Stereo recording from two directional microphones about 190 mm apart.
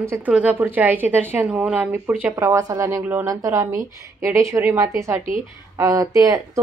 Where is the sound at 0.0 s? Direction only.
10° right (ahead or behind).